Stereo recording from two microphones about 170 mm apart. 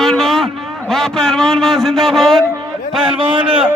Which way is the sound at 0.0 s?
Centre (ahead or behind).